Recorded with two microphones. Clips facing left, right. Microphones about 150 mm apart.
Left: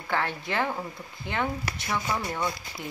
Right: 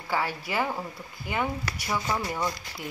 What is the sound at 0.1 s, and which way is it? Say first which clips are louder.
Speech: even; 5° right (ahead or behind).